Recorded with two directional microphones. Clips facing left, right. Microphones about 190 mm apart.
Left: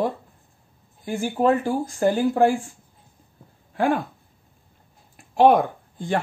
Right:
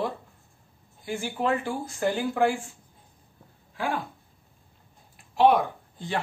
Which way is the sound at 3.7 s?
55° left (ahead or behind).